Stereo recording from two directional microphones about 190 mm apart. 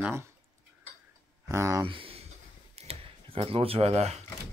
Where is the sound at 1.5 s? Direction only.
15° right (ahead or behind).